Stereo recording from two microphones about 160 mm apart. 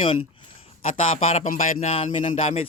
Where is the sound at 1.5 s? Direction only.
60° left (ahead or behind).